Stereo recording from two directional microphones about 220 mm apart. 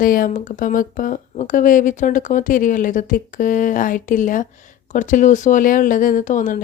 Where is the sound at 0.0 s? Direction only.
40° left (ahead or behind).